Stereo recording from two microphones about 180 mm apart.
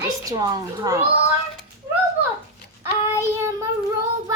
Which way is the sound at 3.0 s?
15° right (ahead or behind).